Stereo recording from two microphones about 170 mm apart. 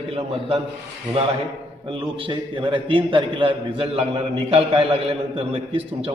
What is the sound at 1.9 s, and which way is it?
A man's voice, 35° right (ahead or behind).